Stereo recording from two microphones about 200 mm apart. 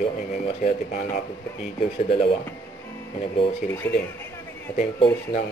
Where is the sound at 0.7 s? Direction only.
40° left (ahead or behind).